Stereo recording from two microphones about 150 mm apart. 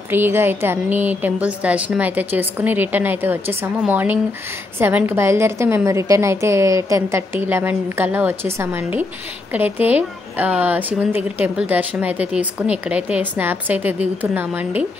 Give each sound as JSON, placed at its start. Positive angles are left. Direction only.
{"t": 0.1, "sound": "a woman's voice", "side_deg": -15}